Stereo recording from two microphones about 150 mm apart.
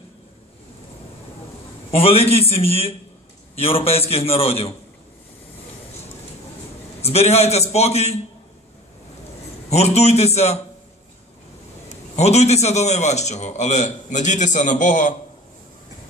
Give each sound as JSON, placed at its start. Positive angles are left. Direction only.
{"t": 1.9, "sound": "a man's voice", "side_deg": 40}
{"t": 7.0, "sound": "a man's voice", "side_deg": 45}
{"t": 9.7, "sound": "a man's voice", "side_deg": 45}
{"t": 12.2, "sound": "a man's voice", "side_deg": 45}